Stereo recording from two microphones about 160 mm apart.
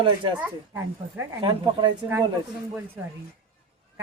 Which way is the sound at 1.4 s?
30° right (ahead or behind).